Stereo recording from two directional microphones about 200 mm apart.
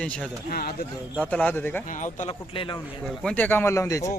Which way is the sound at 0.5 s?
50° left (ahead or behind).